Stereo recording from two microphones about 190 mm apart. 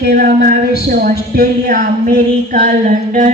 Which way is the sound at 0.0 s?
50° right (ahead or behind).